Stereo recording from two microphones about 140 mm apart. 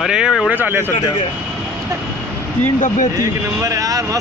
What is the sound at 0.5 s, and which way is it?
Speech, 15° right (ahead or behind).